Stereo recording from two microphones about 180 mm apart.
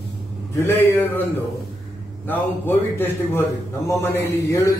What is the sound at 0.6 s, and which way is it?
Speech, 15° left (ahead or behind).